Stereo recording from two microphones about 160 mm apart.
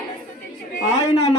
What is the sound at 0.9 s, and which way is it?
Speech, 20° left (ahead or behind).